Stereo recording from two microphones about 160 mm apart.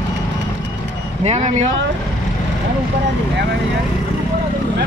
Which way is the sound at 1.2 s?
45° right (ahead or behind).